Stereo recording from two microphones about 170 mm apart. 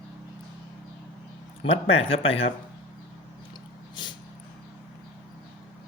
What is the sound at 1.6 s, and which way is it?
Speech, 35° left (ahead or behind).